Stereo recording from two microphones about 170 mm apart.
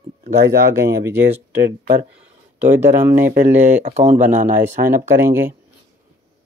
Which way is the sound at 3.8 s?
45° right (ahead or behind).